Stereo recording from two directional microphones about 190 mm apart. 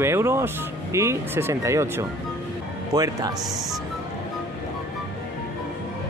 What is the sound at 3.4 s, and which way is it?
Speech, centre (ahead or behind).